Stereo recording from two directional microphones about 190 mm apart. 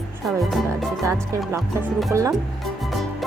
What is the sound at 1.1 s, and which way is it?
Speech, 15° right (ahead or behind).